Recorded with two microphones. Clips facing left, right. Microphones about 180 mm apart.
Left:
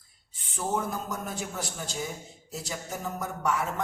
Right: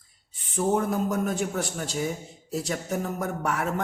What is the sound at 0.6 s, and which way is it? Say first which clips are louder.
Speech: right 6 dB; 65° right (ahead or behind).